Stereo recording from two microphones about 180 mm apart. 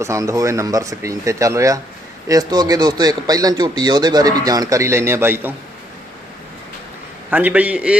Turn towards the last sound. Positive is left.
turn(degrees=-5)  # may be behind; listen again after turning